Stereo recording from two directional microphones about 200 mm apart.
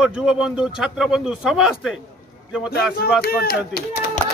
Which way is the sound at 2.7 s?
50° left (ahead or behind).